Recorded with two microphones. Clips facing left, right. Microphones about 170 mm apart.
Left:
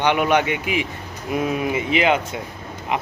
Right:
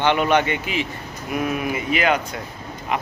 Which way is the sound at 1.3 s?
25° left (ahead or behind).